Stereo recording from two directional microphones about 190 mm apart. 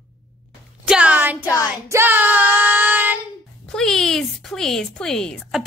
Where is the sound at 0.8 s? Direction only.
5° right (ahead or behind).